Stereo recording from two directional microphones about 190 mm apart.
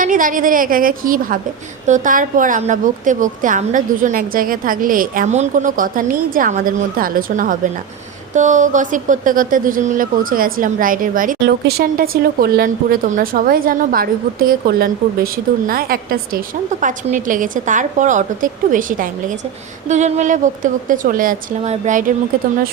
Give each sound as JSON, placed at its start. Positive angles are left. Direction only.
{"t": 0.0, "sound": "a woman's voice", "side_deg": -45}